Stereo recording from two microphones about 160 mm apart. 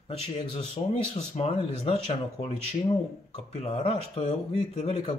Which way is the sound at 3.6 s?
40° left (ahead or behind).